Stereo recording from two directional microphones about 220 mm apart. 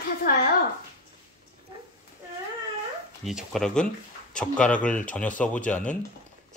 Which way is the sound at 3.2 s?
Centre (ahead or behind).